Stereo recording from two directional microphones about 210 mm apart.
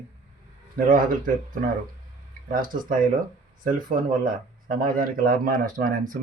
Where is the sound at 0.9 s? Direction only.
40° right (ahead or behind).